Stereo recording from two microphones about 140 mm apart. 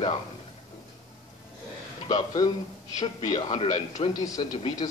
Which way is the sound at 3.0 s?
40° left (ahead or behind).